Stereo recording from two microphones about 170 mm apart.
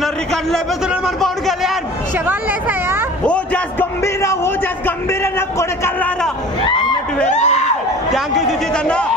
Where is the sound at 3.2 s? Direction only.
10° left (ahead or behind).